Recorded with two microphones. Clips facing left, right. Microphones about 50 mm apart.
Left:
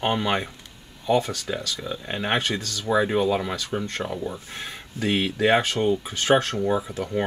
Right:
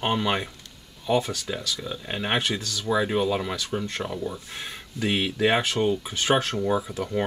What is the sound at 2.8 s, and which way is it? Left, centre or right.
Speech, centre.